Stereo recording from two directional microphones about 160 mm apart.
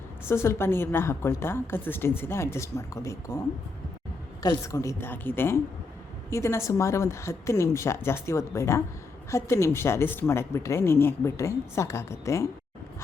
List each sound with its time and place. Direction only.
0.3 s a woman's voice: 15° left (ahead or behind)
4.4 s a woman's voice: 20° left (ahead or behind)